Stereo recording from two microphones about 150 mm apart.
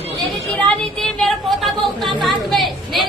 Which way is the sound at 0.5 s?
Centre (ahead or behind).